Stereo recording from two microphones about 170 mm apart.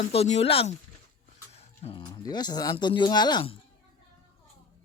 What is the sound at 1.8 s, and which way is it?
Speech, 30° left (ahead or behind).